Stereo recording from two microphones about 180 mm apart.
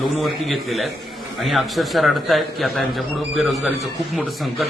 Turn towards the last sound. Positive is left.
turn(degrees=0)  # may be behind; listen again after turning